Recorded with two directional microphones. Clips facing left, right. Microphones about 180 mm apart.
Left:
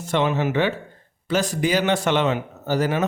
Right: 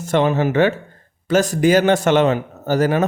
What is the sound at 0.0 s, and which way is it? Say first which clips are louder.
A man's voice: right 4 dB; 45° right (ahead or behind).